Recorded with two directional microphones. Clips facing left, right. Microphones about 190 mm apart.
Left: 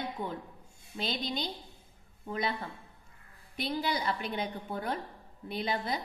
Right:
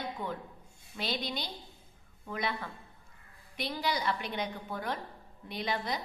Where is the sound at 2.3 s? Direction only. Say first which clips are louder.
Left 2 dB; 30° left (ahead or behind).